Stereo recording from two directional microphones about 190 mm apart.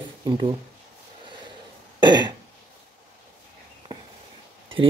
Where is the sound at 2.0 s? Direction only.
25° right (ahead or behind).